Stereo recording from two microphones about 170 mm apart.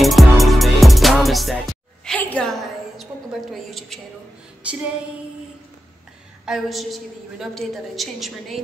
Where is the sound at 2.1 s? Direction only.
10° left (ahead or behind).